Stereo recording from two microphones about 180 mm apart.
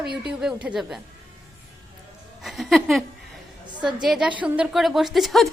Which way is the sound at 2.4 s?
Centre (ahead or behind).